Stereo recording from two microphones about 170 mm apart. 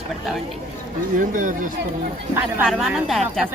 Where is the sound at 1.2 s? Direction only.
50° right (ahead or behind).